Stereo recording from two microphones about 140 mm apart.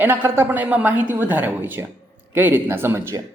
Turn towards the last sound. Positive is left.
turn(degrees=-20)  # may be behind; listen again after turning